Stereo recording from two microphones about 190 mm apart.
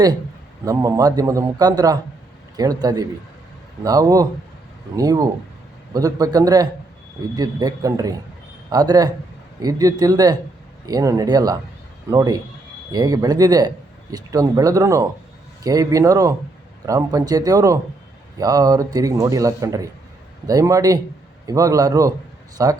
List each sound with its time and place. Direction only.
0.6 s a man's voice: 20° right (ahead or behind)